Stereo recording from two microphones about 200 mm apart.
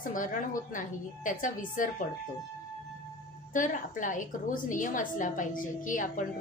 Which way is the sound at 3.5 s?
40° left (ahead or behind).